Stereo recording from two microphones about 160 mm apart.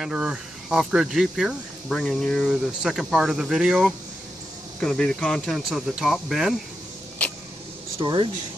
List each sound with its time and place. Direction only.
0.0 s speech: 5° right (ahead or behind)
8.0 s speech: 25° right (ahead or behind)